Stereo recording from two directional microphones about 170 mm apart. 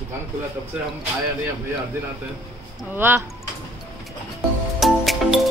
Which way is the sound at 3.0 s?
10° right (ahead or behind).